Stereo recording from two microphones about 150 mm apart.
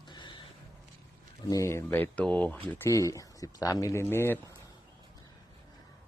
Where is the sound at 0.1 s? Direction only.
30° left (ahead or behind).